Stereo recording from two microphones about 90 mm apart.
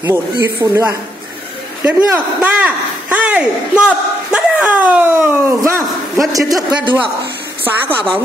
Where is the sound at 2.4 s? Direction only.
10° right (ahead or behind).